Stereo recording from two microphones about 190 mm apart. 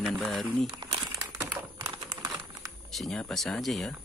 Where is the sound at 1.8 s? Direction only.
25° right (ahead or behind).